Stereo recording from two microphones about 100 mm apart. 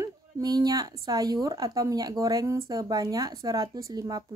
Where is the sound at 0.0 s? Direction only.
40° right (ahead or behind).